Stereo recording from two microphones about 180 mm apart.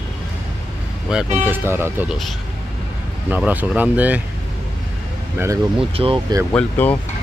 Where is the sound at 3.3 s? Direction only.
10° right (ahead or behind).